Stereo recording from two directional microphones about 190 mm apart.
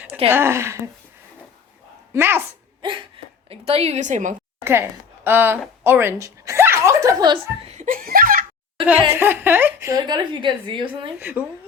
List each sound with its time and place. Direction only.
0.3 s speech: 10° right (ahead or behind)
2.1 s speech: 10° right (ahead or behind)
3.2 s a sound: 30° right (ahead or behind)
3.5 s a woman's voice: 30° right (ahead or behind)
4.6 s a woman's voice: 10° right (ahead or behind); by 8.4 s 50° right (ahead or behind)
8.9 s speech: 10° right (ahead or behind)
10.1 s a woman's voice: 25° right (ahead or behind)
11.2 s speech: 10° right (ahead or behind)